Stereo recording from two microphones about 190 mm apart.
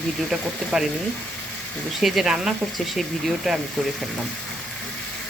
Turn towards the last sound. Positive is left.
turn(degrees=0)  # may be behind; listen again after turning